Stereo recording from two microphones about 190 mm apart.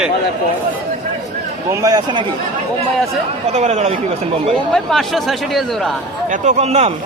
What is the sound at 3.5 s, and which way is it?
Speech, 35° right (ahead or behind).